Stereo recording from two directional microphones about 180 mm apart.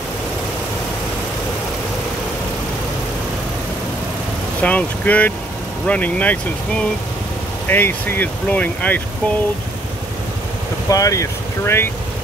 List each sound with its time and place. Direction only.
4.6 s speech: 5° left (ahead or behind)
10.9 s speech: 20° left (ahead or behind)